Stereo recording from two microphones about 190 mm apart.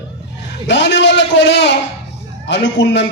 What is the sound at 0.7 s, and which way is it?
A man's voice, 70° left (ahead or behind).